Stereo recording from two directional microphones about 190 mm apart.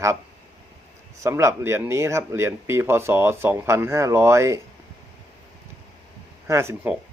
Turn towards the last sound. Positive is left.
turn(degrees=-10)  # may be behind; listen again after turning